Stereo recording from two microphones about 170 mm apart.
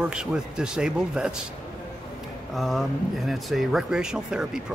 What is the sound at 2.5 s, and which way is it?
Speech, centre (ahead or behind).